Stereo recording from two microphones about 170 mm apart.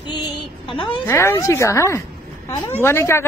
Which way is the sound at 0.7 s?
30° left (ahead or behind).